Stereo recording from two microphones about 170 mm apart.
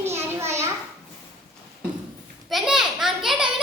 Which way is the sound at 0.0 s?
15° right (ahead or behind).